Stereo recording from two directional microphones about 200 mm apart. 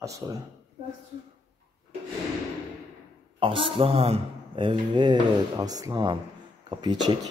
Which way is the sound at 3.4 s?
25° right (ahead or behind).